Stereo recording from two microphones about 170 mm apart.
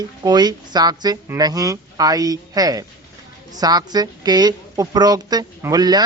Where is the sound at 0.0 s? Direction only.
25° right (ahead or behind).